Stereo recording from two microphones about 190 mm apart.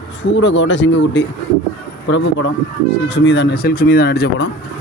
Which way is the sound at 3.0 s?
70° left (ahead or behind).